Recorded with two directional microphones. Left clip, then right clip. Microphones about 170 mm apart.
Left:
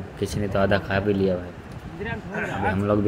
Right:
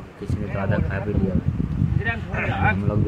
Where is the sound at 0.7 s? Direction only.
10° left (ahead or behind).